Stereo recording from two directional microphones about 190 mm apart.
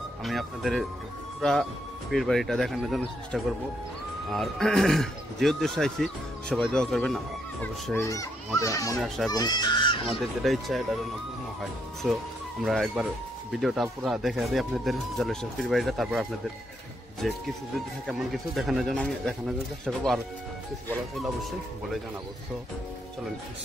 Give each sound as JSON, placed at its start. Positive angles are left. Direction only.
{"t": 0.2, "sound": "speech", "side_deg": 0}
{"t": 7.9, "sound": "speech", "side_deg": 15}
{"t": 9.0, "sound": "speech", "side_deg": 0}
{"t": 9.3, "sound": "speech", "side_deg": 20}
{"t": 10.0, "sound": "speech", "side_deg": 0}
{"t": 12.0, "sound": "speech", "side_deg": 0}
{"t": 21.2, "sound": "speech", "side_deg": 0}